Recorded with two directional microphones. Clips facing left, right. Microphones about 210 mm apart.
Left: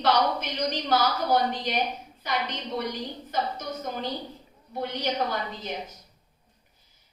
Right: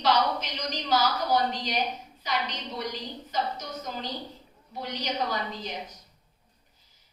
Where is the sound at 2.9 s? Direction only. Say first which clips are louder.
Left 3 dB; 55° left (ahead or behind).